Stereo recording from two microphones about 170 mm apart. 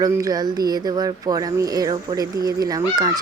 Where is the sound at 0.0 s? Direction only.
20° right (ahead or behind).